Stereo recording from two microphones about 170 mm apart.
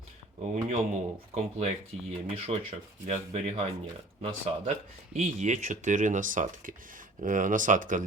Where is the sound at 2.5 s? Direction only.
35° right (ahead or behind).